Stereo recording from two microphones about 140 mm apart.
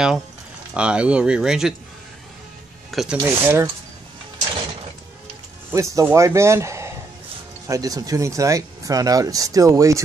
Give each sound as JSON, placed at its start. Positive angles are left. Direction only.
{"t": 0.7, "sound": "speech", "side_deg": -10}
{"t": 2.9, "sound": "speech", "side_deg": 0}
{"t": 3.3, "sound": "speech", "side_deg": -20}
{"t": 5.7, "sound": "speech", "side_deg": -20}